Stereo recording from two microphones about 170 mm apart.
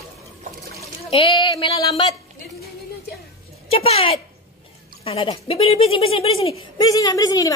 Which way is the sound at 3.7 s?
35° left (ahead or behind).